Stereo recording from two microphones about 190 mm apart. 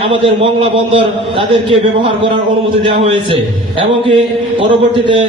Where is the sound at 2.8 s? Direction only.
30° right (ahead or behind).